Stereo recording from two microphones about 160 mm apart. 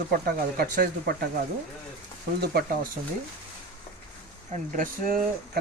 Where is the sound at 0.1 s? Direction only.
70° right (ahead or behind).